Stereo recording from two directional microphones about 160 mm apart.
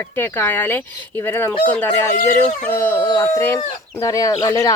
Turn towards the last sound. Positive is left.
turn(degrees=20)  # may be behind; listen again after turning